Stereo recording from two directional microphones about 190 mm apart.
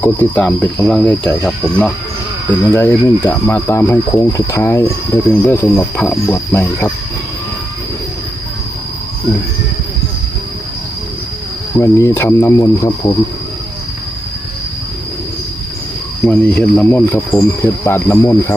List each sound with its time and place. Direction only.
0.0 s speech: 10° left (ahead or behind)
11.8 s speech: 15° left (ahead or behind)
16.2 s speech: 10° left (ahead or behind)